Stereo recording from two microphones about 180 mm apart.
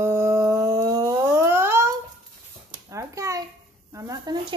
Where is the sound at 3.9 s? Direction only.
20° right (ahead or behind).